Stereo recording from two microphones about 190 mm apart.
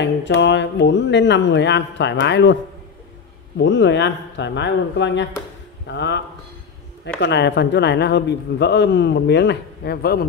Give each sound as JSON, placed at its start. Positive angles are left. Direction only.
{"t": 0.0, "sound": "speech", "side_deg": 70}
{"t": 3.5, "sound": "a man's voice", "side_deg": 70}